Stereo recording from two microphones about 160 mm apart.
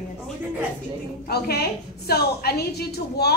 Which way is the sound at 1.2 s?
80° left.